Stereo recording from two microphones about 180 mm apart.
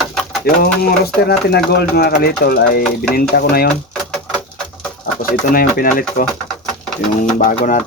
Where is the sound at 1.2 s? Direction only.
65° left (ahead or behind).